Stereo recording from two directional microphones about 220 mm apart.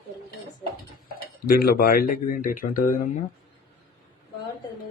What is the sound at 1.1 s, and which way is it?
Speech, 40° left (ahead or behind).